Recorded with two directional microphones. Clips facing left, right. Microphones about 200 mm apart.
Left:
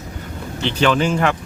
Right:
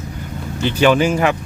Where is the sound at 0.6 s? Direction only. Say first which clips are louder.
Right 3 dB; 10° right (ahead or behind).